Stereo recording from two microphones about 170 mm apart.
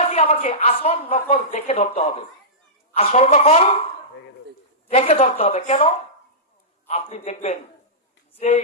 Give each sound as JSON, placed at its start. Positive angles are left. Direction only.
{"t": 0.0, "sound": "a woman's voice", "side_deg": 40}
{"t": 4.9, "sound": "a woman's voice", "side_deg": 40}